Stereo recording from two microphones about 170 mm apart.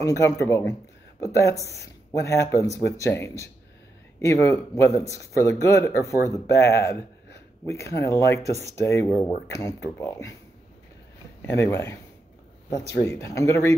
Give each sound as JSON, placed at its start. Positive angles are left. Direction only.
{"t": 0.0, "sound": "speech", "side_deg": 20}
{"t": 11.4, "sound": "speech", "side_deg": 15}